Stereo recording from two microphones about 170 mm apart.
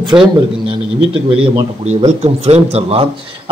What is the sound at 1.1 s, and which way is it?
A man's voice, 35° right (ahead or behind).